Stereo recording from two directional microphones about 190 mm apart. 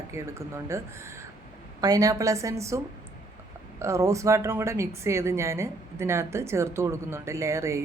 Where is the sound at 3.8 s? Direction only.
15° right (ahead or behind).